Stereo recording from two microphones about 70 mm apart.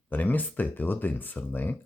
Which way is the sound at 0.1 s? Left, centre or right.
Left.